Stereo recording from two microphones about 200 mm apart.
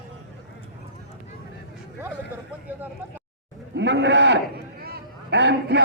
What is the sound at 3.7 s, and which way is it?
A man's voice, 60° right (ahead or behind).